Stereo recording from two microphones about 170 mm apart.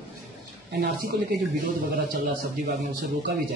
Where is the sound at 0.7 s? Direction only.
75° right (ahead or behind).